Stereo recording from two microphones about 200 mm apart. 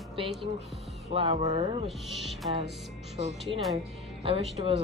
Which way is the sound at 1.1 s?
25° right (ahead or behind).